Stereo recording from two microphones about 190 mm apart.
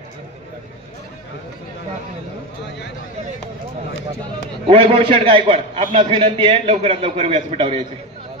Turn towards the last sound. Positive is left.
turn(degrees=-30)  # may be behind; listen again after turning